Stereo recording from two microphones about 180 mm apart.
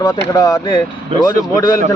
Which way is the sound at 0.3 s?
20° left (ahead or behind).